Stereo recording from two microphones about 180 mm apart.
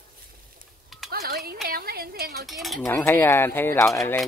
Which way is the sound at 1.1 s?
60° right (ahead or behind).